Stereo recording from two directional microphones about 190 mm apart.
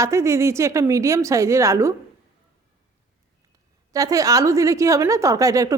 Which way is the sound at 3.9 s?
15° right (ahead or behind).